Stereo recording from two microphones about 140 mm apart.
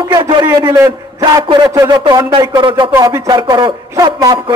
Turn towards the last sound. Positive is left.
turn(degrees=-30)  # may be behind; listen again after turning